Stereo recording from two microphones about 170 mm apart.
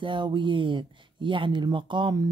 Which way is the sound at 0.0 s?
30° right (ahead or behind).